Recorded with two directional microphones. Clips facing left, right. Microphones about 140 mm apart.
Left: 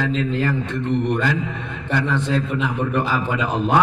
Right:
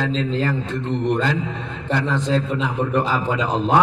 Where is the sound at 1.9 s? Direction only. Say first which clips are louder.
Right 1 dB; 30° right (ahead or behind).